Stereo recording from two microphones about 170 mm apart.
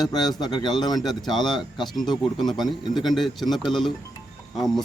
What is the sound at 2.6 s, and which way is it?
A man's voice, centre (ahead or behind).